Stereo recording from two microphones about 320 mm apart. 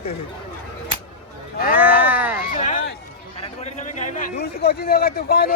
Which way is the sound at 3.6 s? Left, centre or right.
Left.